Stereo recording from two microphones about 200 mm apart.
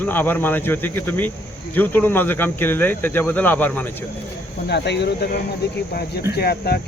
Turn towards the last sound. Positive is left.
turn(degrees=50)  # may be behind; listen again after turning